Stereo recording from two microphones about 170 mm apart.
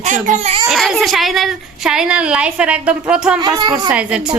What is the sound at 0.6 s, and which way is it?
A child's voice, centre (ahead or behind).